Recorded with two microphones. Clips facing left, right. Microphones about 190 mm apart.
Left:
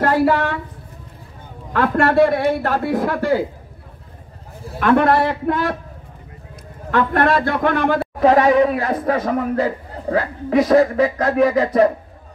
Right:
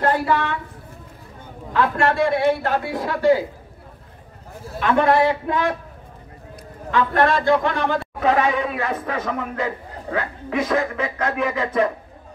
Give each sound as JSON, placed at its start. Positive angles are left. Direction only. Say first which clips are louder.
{"t": 1.7, "sound": "a man's voice", "louder": "left 3 dB", "side_deg": 55}
{"t": 4.7, "sound": "a man's voice", "louder": "left 2 dB", "side_deg": 55}
{"t": 6.9, "sound": "a man's voice", "louder": "left 2 dB", "side_deg": 55}
{"t": 8.2, "sound": "speech", "louder": "left 7 dB", "side_deg": 35}